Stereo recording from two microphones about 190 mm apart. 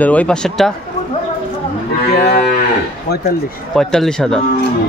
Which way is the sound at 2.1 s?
55° left (ahead or behind).